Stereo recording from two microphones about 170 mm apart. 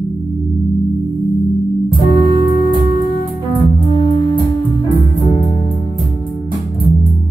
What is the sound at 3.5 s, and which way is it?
Music, 25° left (ahead or behind).